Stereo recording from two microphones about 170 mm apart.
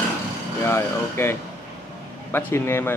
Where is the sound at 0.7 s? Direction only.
15° left (ahead or behind).